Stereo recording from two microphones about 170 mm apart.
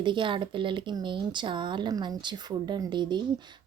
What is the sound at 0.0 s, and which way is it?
Speech, 30° right (ahead or behind).